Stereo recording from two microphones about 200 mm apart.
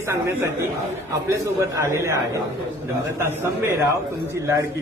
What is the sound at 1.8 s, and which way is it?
A man's voice, 15° right (ahead or behind).